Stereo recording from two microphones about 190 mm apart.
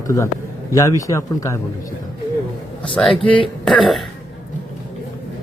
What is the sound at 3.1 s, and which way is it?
Speech, 25° left (ahead or behind).